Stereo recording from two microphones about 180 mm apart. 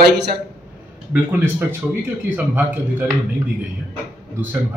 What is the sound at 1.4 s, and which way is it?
A man's voice, 15° right (ahead or behind).